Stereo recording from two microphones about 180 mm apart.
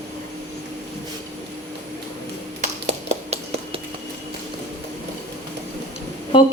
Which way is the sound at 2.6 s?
40° right (ahead or behind).